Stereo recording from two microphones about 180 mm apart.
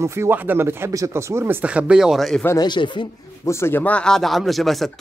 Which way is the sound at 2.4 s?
20° left (ahead or behind).